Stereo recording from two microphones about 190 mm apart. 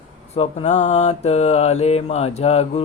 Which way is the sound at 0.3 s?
30° left (ahead or behind).